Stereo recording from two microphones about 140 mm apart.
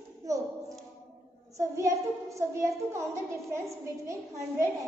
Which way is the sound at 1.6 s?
20° right (ahead or behind).